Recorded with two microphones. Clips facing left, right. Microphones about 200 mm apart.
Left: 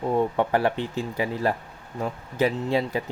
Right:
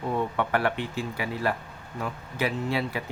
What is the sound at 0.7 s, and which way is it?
Speech, 10° right (ahead or behind).